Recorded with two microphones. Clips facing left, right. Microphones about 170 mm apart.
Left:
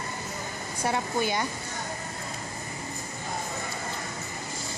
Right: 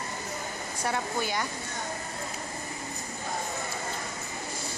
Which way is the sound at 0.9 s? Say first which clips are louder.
Left 3 dB; 20° left (ahead or behind).